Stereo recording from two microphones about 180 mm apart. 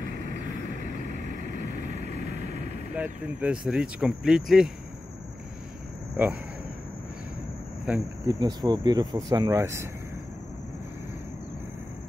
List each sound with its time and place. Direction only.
2.9 s speech: 10° right (ahead or behind)
6.2 s speech: 10° right (ahead or behind)
7.9 s speech: 10° right (ahead or behind)
8.3 s speech: 25° right (ahead or behind)